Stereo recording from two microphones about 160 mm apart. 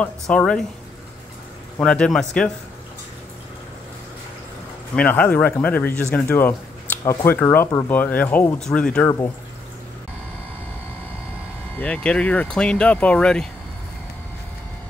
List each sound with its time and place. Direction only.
0.0 s speech: 5° left (ahead or behind)
1.8 s speech: 5° left (ahead or behind)
4.9 s speech: 10° left (ahead or behind)
11.8 s speech: 5° left (ahead or behind)